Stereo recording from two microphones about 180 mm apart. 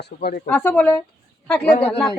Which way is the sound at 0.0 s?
60° left (ahead or behind).